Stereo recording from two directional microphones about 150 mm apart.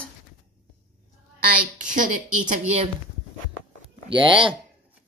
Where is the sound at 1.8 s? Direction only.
60° right (ahead or behind).